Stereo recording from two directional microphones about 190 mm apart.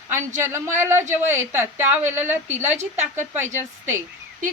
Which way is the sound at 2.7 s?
35° right (ahead or behind).